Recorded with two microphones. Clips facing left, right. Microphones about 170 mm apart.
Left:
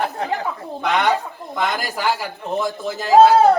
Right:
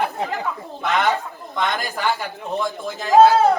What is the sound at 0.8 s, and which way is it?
A man's voice, centre (ahead or behind).